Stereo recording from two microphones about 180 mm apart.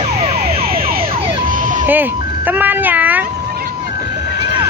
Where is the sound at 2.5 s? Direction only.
10° right (ahead or behind).